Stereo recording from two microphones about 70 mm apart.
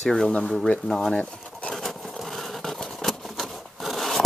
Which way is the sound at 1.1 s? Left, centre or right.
Centre.